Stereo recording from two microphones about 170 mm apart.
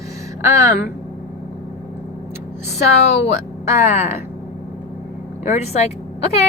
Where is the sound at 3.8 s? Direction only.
40° left (ahead or behind).